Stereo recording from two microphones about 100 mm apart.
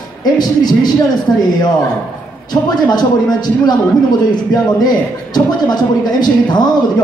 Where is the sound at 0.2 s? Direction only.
45° left (ahead or behind).